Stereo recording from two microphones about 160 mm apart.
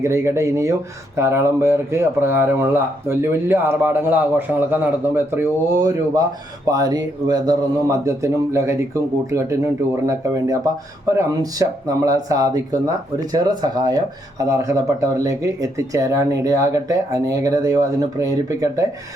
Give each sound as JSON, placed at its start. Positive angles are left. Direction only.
{"t": 0.0, "sound": "speech", "side_deg": -15}
{"t": 10.1, "sound": "speech", "side_deg": -20}